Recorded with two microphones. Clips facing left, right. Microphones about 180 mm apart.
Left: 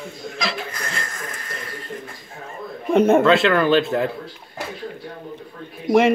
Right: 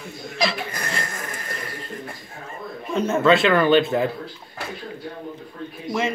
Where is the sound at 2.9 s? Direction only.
60° left (ahead or behind).